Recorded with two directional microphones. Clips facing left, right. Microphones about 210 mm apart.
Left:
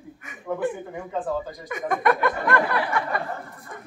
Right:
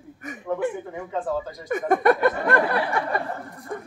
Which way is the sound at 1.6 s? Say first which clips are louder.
Right 4 dB; 40° right (ahead or behind).